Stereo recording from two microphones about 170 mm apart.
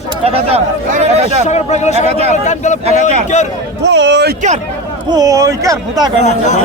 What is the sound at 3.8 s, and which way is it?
Speech, 90° right.